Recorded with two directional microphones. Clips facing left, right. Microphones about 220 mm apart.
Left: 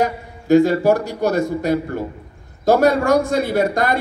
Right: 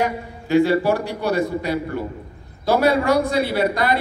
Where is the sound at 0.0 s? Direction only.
45° left (ahead or behind).